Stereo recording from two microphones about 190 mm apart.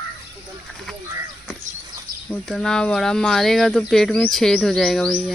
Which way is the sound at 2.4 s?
5° left (ahead or behind).